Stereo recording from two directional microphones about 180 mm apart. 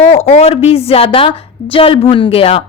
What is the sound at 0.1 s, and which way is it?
A woman's voice, 35° left (ahead or behind).